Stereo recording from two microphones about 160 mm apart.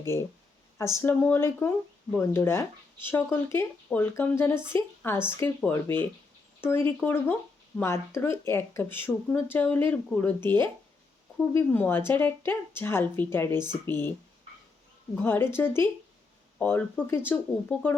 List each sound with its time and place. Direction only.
0.1 s speech: 15° left (ahead or behind)
15.1 s speech: 10° left (ahead or behind)